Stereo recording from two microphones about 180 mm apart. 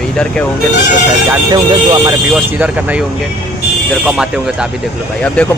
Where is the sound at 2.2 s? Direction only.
5° right (ahead or behind).